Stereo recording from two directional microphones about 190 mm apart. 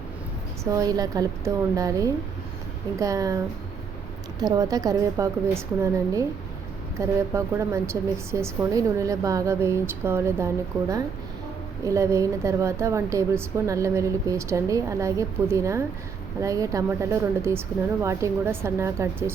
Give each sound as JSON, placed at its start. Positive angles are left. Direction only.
{"t": 0.6, "sound": "a woman's voice", "side_deg": -20}